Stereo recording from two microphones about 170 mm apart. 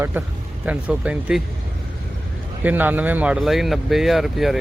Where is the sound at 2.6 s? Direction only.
10° right (ahead or behind).